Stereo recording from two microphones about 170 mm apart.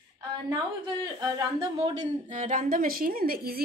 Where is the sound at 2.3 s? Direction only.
50° right (ahead or behind).